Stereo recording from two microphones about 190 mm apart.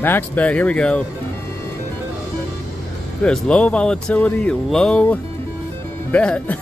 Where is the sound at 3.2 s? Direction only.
5° left (ahead or behind).